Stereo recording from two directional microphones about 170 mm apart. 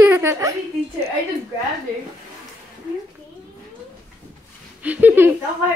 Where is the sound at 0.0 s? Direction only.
15° right (ahead or behind).